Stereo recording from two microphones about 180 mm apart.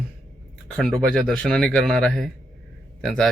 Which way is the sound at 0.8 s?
Centre (ahead or behind).